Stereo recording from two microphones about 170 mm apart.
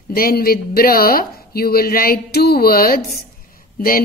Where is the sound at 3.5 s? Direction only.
60° left (ahead or behind).